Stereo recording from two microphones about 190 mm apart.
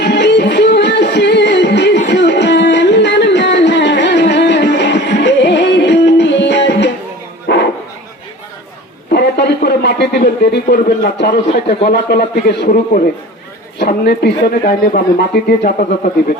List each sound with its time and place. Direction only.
0.0 s music: 65° left (ahead or behind)
7.4 s bow-wow: 65° left (ahead or behind)
9.1 s a sound: 65° left (ahead or behind)
11.9 s speech: 55° left (ahead or behind)
13.7 s speech: 60° left (ahead or behind)